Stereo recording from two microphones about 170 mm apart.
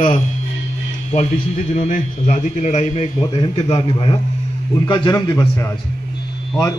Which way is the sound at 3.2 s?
30° left (ahead or behind).